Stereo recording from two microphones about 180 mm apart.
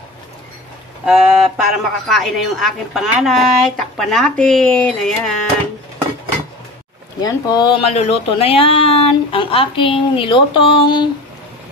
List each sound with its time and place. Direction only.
1.0 s a woman's voice: centre (ahead or behind)
7.2 s speech: 20° left (ahead or behind)